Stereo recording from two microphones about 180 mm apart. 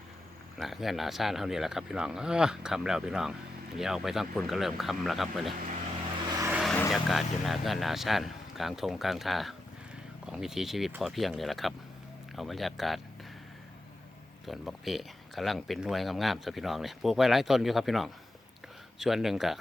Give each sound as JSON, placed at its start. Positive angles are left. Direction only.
{"t": 0.5, "sound": "speech", "side_deg": 0}
{"t": 6.3, "sound": "vehicle", "side_deg": -15}
{"t": 6.6, "sound": "vehicle", "side_deg": 0}
{"t": 6.9, "sound": "speech", "side_deg": 0}
{"t": 14.4, "sound": "speech", "side_deg": 0}